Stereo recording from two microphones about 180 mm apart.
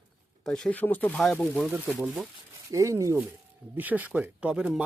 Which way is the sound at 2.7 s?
15° right (ahead or behind).